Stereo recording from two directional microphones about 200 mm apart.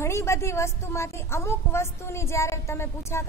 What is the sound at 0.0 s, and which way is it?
A woman's voice, 15° left (ahead or behind).